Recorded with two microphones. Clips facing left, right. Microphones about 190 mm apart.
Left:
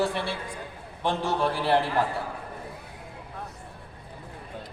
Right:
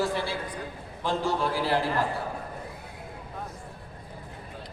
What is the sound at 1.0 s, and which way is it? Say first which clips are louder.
Speech: left 1 dB; 65° left (ahead or behind).